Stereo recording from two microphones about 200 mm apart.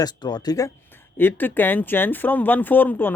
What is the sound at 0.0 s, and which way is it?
Speech, 20° left (ahead or behind).